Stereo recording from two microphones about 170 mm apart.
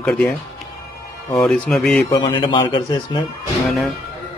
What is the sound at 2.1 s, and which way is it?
A man's voice, 25° left (ahead or behind).